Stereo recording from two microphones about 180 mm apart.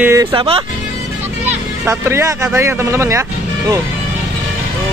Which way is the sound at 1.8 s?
15° right (ahead or behind).